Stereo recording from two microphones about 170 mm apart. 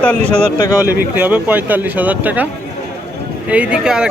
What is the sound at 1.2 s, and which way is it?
Speech, 10° right (ahead or behind).